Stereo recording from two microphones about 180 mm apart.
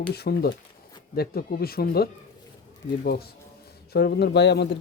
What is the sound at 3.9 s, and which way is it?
Speech, 60° left (ahead or behind).